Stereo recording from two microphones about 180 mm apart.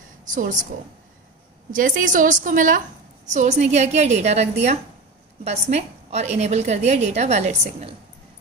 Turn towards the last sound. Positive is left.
turn(degrees=-40)  # may be behind; listen again after turning